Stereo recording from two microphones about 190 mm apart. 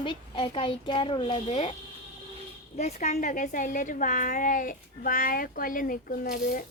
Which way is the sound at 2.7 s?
35° left (ahead or behind).